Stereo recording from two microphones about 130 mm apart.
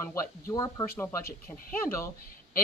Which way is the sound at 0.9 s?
15° left (ahead or behind).